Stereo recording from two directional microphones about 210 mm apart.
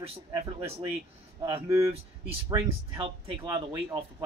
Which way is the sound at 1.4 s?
15° right (ahead or behind).